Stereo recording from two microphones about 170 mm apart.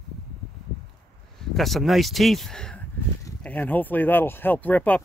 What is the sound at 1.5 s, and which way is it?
Speech, centre (ahead or behind).